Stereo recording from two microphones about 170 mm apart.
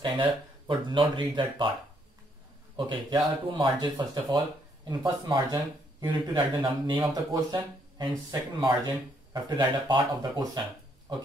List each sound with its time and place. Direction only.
0.0 s speech: 30° right (ahead or behind)
2.7 s speech: 25° right (ahead or behind)